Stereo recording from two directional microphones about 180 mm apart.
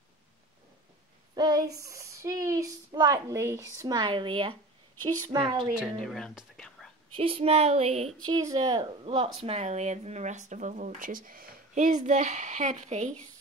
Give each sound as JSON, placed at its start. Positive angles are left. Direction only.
{"t": 1.3, "sound": "speech", "side_deg": -20}
{"t": 4.9, "sound": "a woman's voice", "side_deg": 10}
{"t": 5.4, "sound": "speech", "side_deg": -25}
{"t": 6.0, "sound": "whispering", "side_deg": 5}
{"t": 7.2, "sound": "speech", "side_deg": -30}
{"t": 8.3, "sound": "speech", "side_deg": -20}